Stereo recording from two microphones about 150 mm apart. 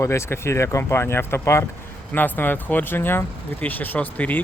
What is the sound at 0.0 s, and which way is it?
Speech, 20° left (ahead or behind).